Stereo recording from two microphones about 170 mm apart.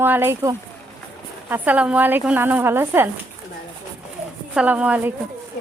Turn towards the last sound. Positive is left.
turn(degrees=-10)  # may be behind; listen again after turning